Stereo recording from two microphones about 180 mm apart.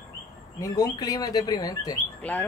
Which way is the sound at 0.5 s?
20° left (ahead or behind).